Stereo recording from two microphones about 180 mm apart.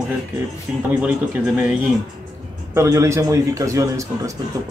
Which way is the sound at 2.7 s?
15° right (ahead or behind).